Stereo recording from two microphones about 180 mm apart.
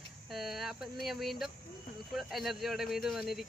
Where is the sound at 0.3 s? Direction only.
Centre (ahead or behind).